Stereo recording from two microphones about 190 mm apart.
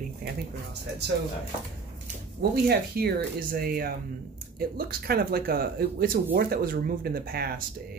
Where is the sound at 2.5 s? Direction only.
55° right (ahead or behind).